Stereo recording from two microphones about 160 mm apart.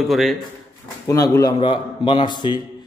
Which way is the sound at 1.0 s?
20° left (ahead or behind).